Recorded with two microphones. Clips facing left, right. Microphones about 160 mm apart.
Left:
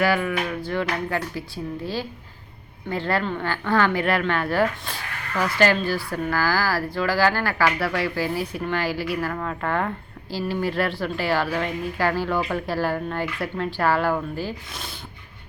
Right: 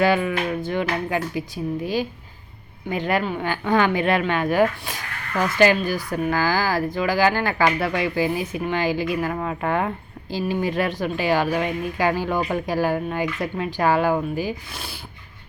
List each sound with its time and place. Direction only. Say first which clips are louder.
0.0 s speech: right 2 dB; 25° right (ahead or behind); by 14.9 s 5° right (ahead or behind)